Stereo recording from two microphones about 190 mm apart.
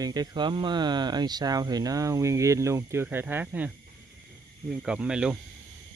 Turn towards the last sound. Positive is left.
turn(degrees=-5)  # may be behind; listen again after turning